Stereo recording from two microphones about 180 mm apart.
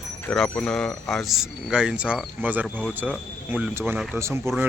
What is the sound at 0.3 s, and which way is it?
Speech, 5° left (ahead or behind).